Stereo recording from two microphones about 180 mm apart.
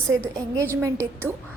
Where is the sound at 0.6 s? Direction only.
15° right (ahead or behind).